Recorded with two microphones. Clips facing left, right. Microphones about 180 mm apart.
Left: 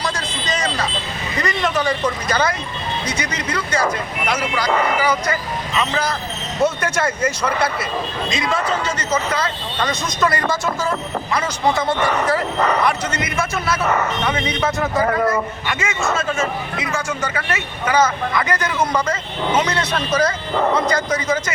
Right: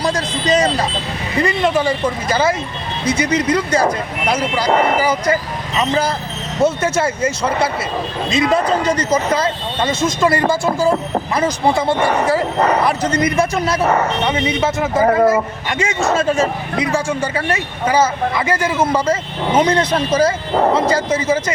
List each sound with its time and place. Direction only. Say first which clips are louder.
0.0 s speech: right 6 dB; 35° right (ahead or behind)